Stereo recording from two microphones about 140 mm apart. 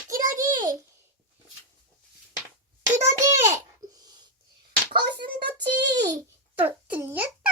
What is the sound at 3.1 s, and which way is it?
Speech, 20° right (ahead or behind).